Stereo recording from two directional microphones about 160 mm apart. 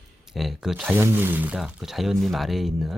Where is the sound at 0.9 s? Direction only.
15° right (ahead or behind).